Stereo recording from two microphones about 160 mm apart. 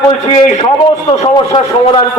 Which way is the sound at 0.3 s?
50° left (ahead or behind).